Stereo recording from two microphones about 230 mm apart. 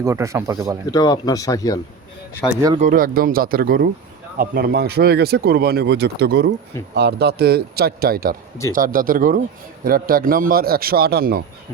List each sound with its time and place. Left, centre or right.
0.0 s speech: centre
0.9 s speech: centre
2.5 s speech: centre
2.7 s a man's voice: right